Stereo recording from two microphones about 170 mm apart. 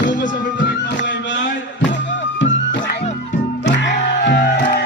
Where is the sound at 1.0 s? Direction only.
90° left.